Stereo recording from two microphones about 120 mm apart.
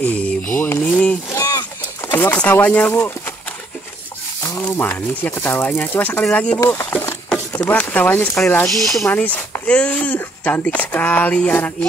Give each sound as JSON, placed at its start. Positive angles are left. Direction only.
{"t": 0.0, "sound": "mantra", "side_deg": 15}
{"t": 0.8, "sound": "sheep", "side_deg": 10}
{"t": 1.3, "sound": "a sound", "side_deg": 30}
{"t": 2.0, "sound": "chopping", "side_deg": 15}
{"t": 4.6, "sound": "speech", "side_deg": 15}
{"t": 6.6, "sound": "speech", "side_deg": 25}
{"t": 6.9, "sound": "a sound", "side_deg": 15}
{"t": 7.2, "sound": "a sound", "side_deg": 5}
{"t": 7.6, "sound": "speech", "side_deg": 15}
{"t": 9.0, "sound": "speech", "side_deg": 15}